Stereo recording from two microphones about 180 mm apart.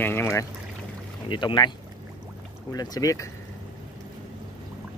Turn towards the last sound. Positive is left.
turn(degrees=20)  # may be behind; listen again after turning